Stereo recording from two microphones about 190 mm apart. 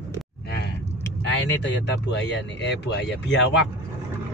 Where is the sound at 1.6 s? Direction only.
65° left (ahead or behind).